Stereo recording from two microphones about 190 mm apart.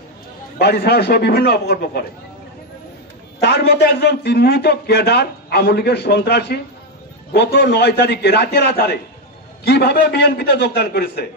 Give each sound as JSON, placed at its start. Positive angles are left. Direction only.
{"t": 0.6, "sound": "a man's voice", "side_deg": 60}
{"t": 3.4, "sound": "a man's voice", "side_deg": 60}